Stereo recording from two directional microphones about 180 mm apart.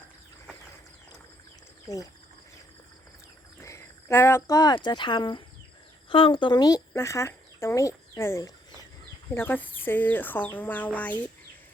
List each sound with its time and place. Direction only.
1.9 s speech: 20° left (ahead or behind)
3.6 s speech: 15° left (ahead or behind)